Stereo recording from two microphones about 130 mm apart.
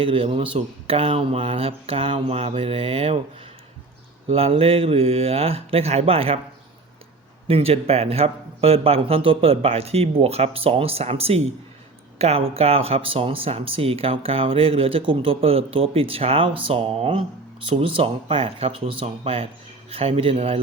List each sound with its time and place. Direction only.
0.0 s speech: 45° right (ahead or behind)
4.3 s speech: 50° right (ahead or behind)
7.4 s speech: 50° right (ahead or behind)